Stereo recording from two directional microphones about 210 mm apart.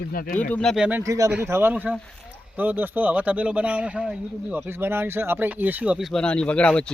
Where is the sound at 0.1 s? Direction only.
45° left (ahead or behind).